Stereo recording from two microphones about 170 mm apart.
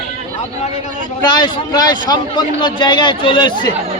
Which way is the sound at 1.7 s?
25° left (ahead or behind).